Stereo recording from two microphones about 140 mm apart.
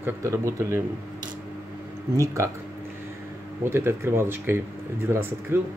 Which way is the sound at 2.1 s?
20° right (ahead or behind).